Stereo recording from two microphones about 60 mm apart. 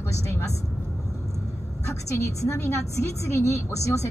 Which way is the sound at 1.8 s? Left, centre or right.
Left.